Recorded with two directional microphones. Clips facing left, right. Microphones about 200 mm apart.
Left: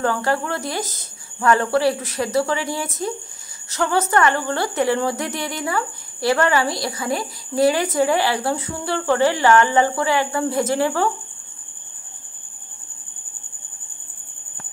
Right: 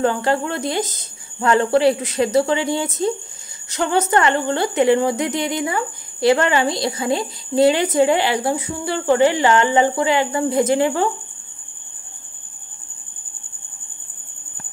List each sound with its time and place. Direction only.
0.0 s a woman's voice: 20° right (ahead or behind)